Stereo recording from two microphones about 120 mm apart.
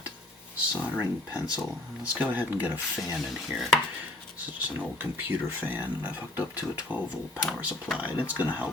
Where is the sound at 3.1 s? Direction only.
Centre (ahead or behind).